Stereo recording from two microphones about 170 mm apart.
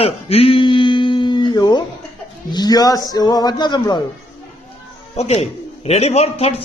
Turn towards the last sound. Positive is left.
turn(degrees=40)  # may be behind; listen again after turning